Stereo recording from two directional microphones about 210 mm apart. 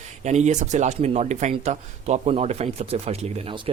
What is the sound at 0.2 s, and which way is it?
Speech, 35° right (ahead or behind).